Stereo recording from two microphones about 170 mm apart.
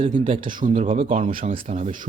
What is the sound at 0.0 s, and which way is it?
Speech, 30° right (ahead or behind).